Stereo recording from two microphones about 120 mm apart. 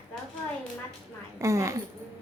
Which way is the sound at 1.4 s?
25° right (ahead or behind).